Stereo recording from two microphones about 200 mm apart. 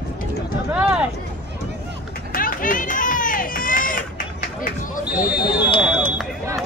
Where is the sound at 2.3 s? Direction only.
45° left (ahead or behind).